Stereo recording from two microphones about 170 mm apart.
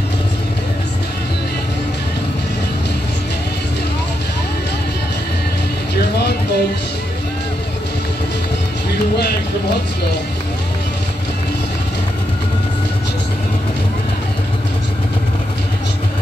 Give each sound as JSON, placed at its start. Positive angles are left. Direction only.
{"t": 6.1, "sound": "music", "side_deg": 75}
{"t": 9.1, "sound": "run", "side_deg": 75}